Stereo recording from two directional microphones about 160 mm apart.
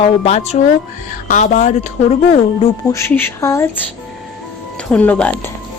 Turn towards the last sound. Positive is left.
turn(degrees=10)  # may be behind; listen again after turning